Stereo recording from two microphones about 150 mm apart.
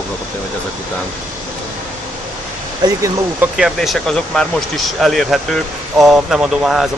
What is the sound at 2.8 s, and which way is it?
Speech, 30° right (ahead or behind).